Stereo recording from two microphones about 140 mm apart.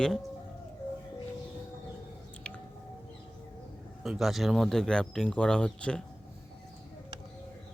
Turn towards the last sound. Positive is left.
turn(degrees=5)  # may be behind; listen again after turning